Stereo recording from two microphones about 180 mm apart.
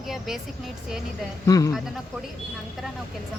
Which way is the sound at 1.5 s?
20° left (ahead or behind).